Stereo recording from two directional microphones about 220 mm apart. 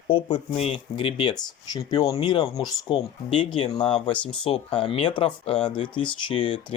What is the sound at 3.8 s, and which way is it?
Speech, 5° left (ahead or behind).